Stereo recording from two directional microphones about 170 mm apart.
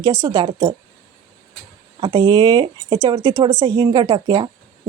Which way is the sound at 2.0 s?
25° right (ahead or behind).